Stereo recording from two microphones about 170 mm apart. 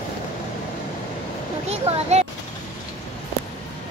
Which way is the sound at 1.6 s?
40° right (ahead or behind).